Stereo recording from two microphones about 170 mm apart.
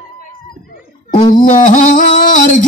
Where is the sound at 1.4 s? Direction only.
50° left (ahead or behind).